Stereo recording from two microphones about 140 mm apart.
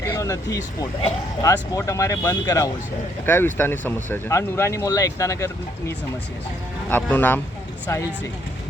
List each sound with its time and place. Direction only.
0.0 s speech: 20° left (ahead or behind)
6.9 s speech: 15° left (ahead or behind)